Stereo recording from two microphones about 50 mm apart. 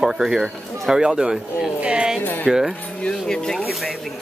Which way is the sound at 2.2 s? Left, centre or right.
Left.